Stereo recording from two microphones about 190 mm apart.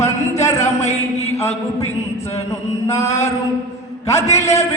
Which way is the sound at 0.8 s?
35° left (ahead or behind).